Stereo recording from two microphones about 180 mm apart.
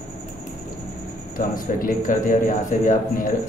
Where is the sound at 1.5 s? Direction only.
50° left (ahead or behind).